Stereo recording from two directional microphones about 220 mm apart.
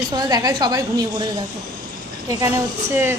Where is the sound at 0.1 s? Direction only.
20° right (ahead or behind).